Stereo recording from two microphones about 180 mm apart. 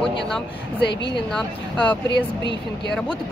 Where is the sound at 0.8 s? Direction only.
70° left (ahead or behind).